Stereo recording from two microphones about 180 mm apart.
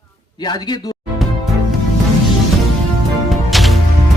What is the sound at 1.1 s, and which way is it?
Music, centre (ahead or behind).